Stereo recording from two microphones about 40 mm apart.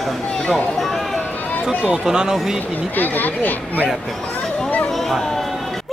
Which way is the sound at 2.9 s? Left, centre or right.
Left.